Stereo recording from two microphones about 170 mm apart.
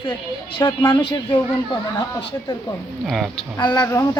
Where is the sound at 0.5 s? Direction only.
25° left (ahead or behind).